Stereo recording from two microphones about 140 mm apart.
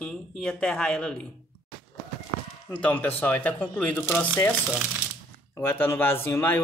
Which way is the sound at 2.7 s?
10° left (ahead or behind).